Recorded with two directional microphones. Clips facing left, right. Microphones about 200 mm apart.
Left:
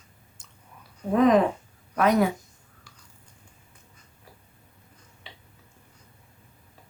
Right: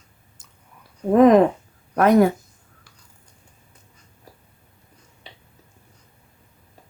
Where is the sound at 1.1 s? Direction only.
55° right (ahead or behind).